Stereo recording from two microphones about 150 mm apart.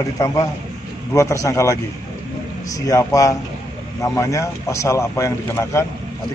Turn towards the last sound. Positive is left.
turn(degrees=15)  # may be behind; listen again after turning